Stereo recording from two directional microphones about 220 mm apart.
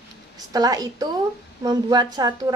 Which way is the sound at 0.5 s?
15° right (ahead or behind).